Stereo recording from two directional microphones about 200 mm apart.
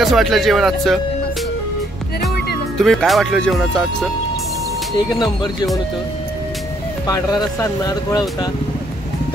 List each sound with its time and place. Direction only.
0.0 s speech: centre (ahead or behind)
2.8 s speech: centre (ahead or behind)
5.2 s speech: 20° left (ahead or behind)
7.1 s speech: 15° left (ahead or behind)